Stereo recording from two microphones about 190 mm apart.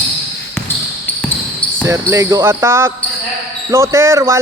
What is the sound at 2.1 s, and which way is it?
Speech, 15° right (ahead or behind).